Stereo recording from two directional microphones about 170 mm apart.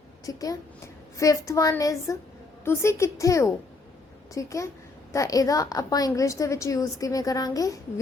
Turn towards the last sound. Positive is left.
turn(degrees=20)  # may be behind; listen again after turning